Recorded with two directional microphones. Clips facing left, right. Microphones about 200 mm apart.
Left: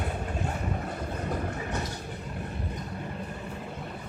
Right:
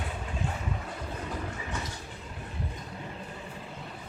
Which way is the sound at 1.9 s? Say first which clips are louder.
Left 5 dB; 60° left (ahead or behind).